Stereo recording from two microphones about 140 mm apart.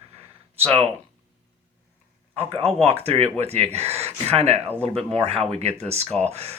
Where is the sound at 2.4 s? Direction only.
45° right (ahead or behind).